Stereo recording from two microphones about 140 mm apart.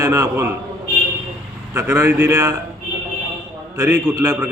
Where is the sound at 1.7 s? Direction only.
20° right (ahead or behind).